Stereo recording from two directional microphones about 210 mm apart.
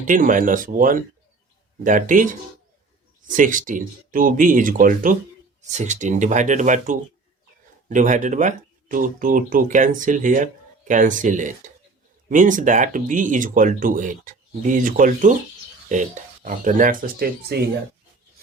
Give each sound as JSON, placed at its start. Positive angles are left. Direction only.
{"t": 0.1, "sound": "speech", "side_deg": -40}